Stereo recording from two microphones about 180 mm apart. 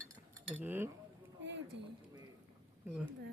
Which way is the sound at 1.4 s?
80° right.